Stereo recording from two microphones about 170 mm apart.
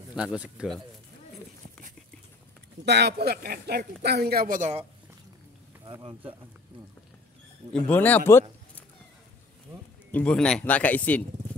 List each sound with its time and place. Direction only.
0.1 s speech: 5° right (ahead or behind)
2.8 s speech: 75° right (ahead or behind); by 4.8 s 45° right (ahead or behind)
5.9 s speech: 25° right (ahead or behind)
7.7 s speech: 10° left (ahead or behind)
10.1 s speech: 5° left (ahead or behind)